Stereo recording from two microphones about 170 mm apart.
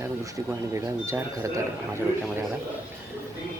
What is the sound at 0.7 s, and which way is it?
Speech, 15° right (ahead or behind).